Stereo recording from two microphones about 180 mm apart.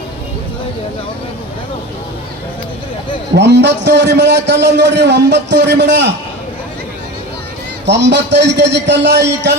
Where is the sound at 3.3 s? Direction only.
75° right (ahead or behind).